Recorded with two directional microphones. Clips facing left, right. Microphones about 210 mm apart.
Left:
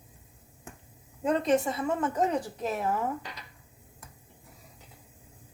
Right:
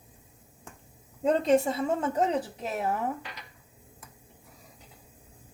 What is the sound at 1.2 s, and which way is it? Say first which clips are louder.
Speech: right 2 dB; 25° right (ahead or behind).